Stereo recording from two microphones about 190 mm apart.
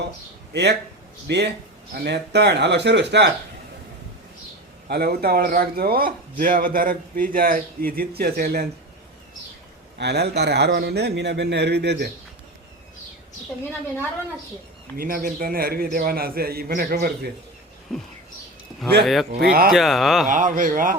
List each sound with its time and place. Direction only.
0.5 s a man's voice: 65° right (ahead or behind)
4.9 s speech: 55° right (ahead or behind)
10.0 s a man's voice: 60° right (ahead or behind)
14.9 s speech: 50° right (ahead or behind)
17.9 s speech: 5° left (ahead or behind)
19.4 s a man's voice: 55° right (ahead or behind)
19.7 s speech: centre (ahead or behind)
20.2 s speech: 45° right (ahead or behind)